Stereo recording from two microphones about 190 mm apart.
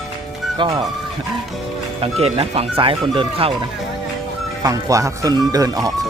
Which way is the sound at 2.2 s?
30° right (ahead or behind).